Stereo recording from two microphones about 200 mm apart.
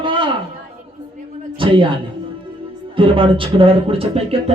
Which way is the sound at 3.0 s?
25° right (ahead or behind).